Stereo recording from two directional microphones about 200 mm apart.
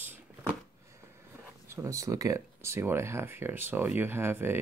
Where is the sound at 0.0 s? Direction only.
10° right (ahead or behind).